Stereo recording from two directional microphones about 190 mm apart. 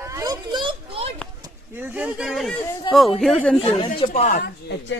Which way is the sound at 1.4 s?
10° right (ahead or behind).